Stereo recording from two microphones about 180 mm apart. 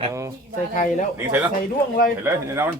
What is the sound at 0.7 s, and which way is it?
Speech, 45° left (ahead or behind).